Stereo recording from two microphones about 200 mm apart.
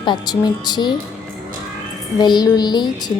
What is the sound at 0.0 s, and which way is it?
Speech, 20° left (ahead or behind).